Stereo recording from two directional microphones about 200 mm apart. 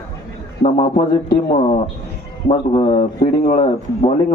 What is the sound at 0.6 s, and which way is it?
Speech, 30° left (ahead or behind).